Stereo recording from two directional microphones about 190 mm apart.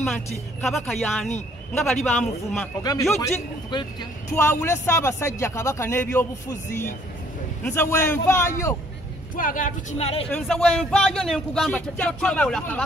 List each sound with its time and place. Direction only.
0.6 s speech: centre (ahead or behind)
2.8 s a man's voice: 20° left (ahead or behind)
7.6 s a man's voice: 10° left (ahead or behind)
9.3 s speech: 45° left (ahead or behind)
10.3 s speech: 5° left (ahead or behind)